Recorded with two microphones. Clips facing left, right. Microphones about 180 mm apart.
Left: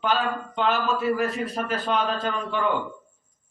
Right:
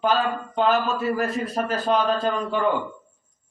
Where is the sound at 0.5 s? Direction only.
40° right (ahead or behind).